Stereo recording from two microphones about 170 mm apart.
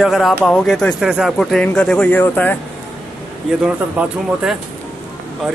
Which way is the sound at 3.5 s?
5° right (ahead or behind).